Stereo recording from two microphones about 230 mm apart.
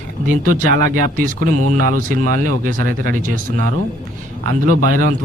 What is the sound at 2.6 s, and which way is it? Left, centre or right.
Speech, right.